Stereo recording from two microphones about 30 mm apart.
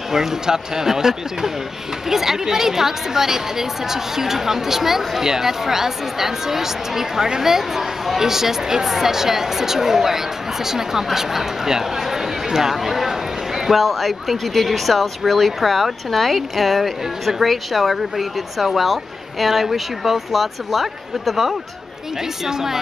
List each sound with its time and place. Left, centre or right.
0.1 s a woman's voice: centre
22.5 s a woman's voice: centre